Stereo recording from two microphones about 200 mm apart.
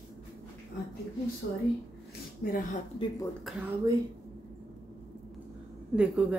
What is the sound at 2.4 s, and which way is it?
Speech, 50° left (ahead or behind).